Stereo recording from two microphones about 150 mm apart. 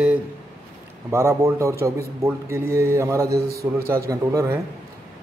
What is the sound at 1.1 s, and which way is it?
Speech, 20° right (ahead or behind).